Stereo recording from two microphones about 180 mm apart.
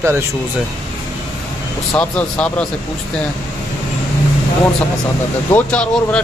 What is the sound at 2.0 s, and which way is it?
Speech, 5° left (ahead or behind).